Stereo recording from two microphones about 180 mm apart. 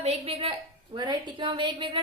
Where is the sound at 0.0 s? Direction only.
35° right (ahead or behind).